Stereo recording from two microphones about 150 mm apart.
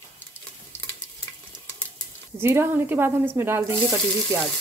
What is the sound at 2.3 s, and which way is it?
Speech, 15° right (ahead or behind).